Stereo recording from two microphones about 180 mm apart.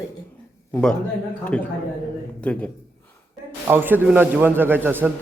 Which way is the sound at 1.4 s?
5° left (ahead or behind).